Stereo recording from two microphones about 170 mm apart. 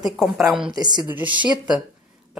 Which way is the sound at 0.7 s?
25° right (ahead or behind).